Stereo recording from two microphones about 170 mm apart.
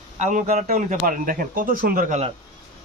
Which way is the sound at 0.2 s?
45° right (ahead or behind).